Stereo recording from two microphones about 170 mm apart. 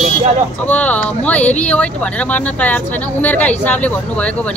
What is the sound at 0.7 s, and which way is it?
Speech, 10° left (ahead or behind).